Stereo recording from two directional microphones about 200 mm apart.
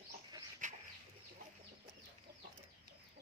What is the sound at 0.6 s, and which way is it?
Bird, 40° right (ahead or behind).